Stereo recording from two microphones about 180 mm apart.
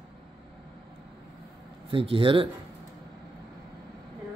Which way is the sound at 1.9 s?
30° right (ahead or behind).